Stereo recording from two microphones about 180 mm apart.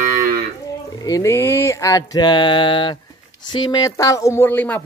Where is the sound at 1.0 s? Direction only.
20° left (ahead or behind).